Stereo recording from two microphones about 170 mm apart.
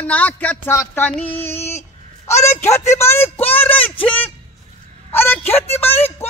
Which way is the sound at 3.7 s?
30° left (ahead or behind).